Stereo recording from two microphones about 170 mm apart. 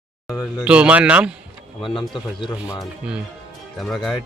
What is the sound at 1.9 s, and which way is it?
Speech, 30° left (ahead or behind).